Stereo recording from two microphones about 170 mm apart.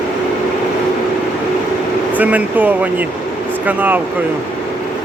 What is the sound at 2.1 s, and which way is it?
Speech, 10° right (ahead or behind).